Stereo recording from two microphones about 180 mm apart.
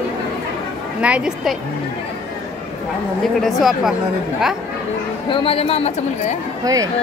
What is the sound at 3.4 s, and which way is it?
Speech, centre (ahead or behind).